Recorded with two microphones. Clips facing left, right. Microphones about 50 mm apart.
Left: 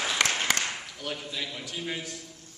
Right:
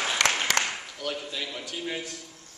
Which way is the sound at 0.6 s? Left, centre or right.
Right.